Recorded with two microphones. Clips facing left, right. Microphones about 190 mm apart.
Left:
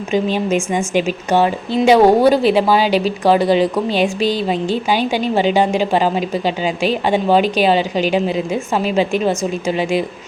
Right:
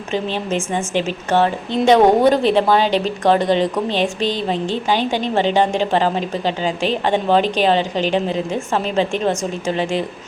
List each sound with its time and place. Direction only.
0.1 s a woman's voice: 10° left (ahead or behind)